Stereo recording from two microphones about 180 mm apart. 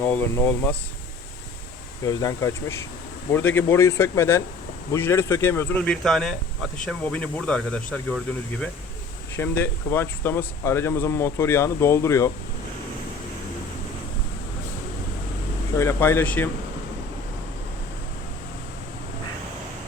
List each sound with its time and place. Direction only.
0.0 s speech: 10° left (ahead or behind)
2.0 s speech: 20° left (ahead or behind)
9.3 s speech: 10° left (ahead or behind)
15.8 s speech: 15° left (ahead or behind)